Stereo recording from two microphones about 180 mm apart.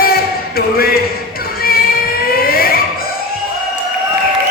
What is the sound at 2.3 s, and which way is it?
Fire alarm, 55° left (ahead or behind).